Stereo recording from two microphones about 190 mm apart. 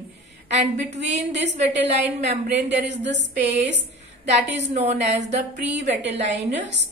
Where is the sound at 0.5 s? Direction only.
35° right (ahead or behind).